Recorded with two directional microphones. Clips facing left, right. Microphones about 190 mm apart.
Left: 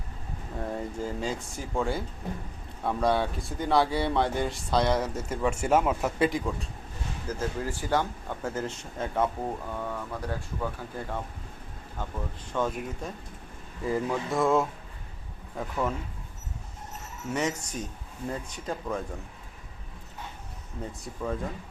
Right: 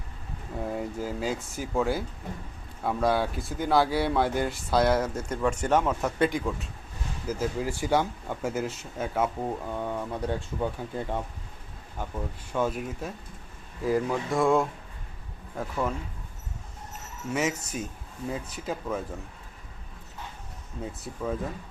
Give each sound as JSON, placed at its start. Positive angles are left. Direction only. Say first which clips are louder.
{"t": 0.6, "sound": "speech", "louder": "right 1 dB", "side_deg": -10}
{"t": 7.3, "sound": "speech", "louder": "right 3 dB", "side_deg": -10}
{"t": 9.7, "sound": "speech", "louder": "right 3 dB", "side_deg": -20}
{"t": 12.0, "sound": "speech", "louder": "right 2 dB", "side_deg": -10}
{"t": 17.3, "sound": "speech", "louder": "right 1 dB", "side_deg": -5}
{"t": 20.8, "sound": "speech", "louder": "right 1 dB", "side_deg": -5}